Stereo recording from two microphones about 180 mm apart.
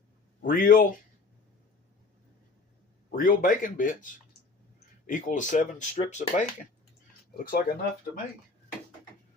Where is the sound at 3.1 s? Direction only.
50° left (ahead or behind).